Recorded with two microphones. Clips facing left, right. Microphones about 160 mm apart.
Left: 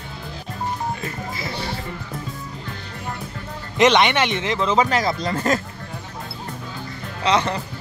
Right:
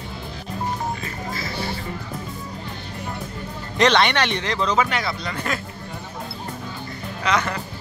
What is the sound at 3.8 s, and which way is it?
Speech, 15° left (ahead or behind).